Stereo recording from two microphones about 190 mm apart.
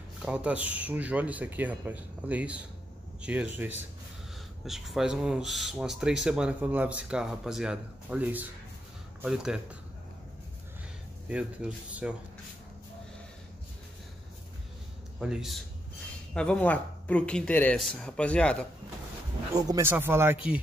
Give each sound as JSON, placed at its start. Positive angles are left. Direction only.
{"t": 0.2, "sound": "speech", "side_deg": -5}
{"t": 11.2, "sound": "speech", "side_deg": -5}
{"t": 15.1, "sound": "speech", "side_deg": 0}
{"t": 19.5, "sound": "speech", "side_deg": -15}